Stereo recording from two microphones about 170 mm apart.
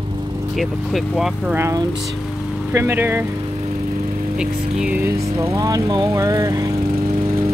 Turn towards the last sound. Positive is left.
turn(degrees=-35)  # may be behind; listen again after turning